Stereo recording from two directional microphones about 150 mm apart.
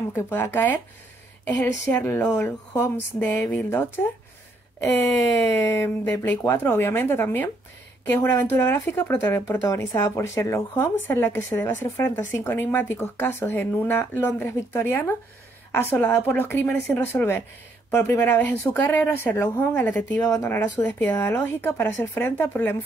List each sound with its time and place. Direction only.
0.1 s speech: 15° left (ahead or behind)
5.6 s speech: 20° left (ahead or behind)
20.2 s speech: 20° left (ahead or behind)